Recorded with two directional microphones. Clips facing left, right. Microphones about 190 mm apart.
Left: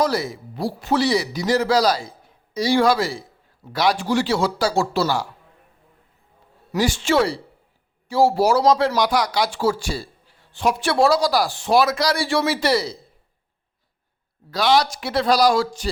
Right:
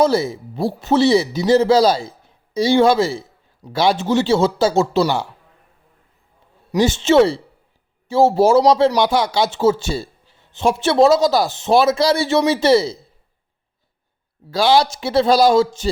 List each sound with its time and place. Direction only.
0.0 s speech: 25° right (ahead or behind)
6.7 s speech: 25° right (ahead or behind)
14.5 s speech: 30° right (ahead or behind)